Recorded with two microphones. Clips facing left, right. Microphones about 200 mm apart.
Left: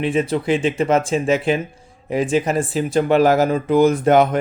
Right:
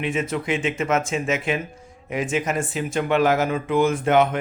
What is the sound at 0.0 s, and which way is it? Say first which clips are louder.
Speech: left 6 dB; 35° left (ahead or behind).